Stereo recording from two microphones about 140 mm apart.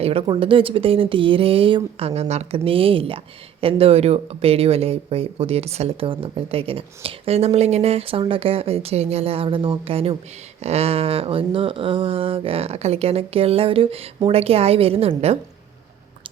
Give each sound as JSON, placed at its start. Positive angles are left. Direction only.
{"t": 0.0, "sound": "speech", "side_deg": -45}